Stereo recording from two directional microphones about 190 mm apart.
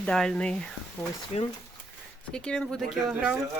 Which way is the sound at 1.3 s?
35° left (ahead or behind).